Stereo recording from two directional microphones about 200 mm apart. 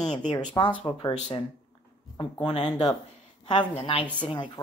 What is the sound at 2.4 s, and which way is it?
Speech, 20° left (ahead or behind).